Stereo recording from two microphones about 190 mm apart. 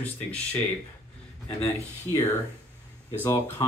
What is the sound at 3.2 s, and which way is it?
Speech, 10° left (ahead or behind).